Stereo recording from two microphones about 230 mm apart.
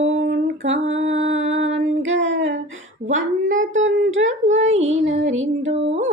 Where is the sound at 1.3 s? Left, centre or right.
Right.